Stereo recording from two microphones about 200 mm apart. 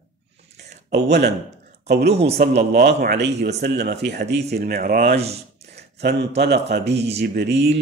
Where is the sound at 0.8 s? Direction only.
55° right (ahead or behind).